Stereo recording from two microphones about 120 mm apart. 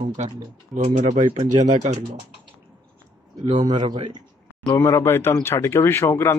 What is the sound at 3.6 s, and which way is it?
Speech, 40° right (ahead or behind).